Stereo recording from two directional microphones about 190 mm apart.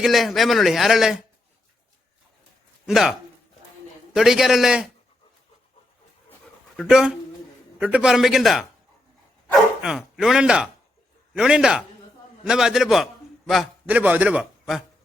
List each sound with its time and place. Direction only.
0.0 s a man's voice: centre (ahead or behind)
2.8 s a man's voice: centre (ahead or behind)
6.7 s a man's voice: 5° right (ahead or behind)
9.8 s a man's voice: 5° right (ahead or behind)